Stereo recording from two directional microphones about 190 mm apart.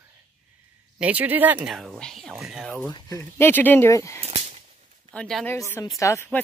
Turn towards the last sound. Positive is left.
turn(degrees=15)  # may be behind; listen again after turning